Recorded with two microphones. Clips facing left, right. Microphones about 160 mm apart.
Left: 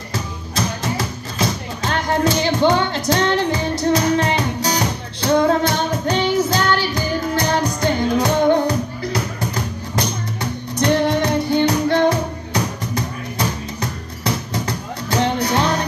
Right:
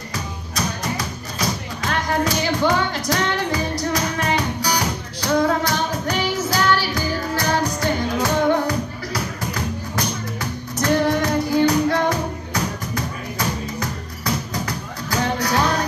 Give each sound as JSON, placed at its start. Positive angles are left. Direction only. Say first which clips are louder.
{"t": 0.6, "sound": "music", "louder": "left 3 dB", "side_deg": 25}